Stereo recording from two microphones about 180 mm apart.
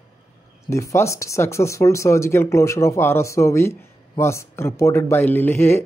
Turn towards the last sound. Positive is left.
turn(degrees=10)  # may be behind; listen again after turning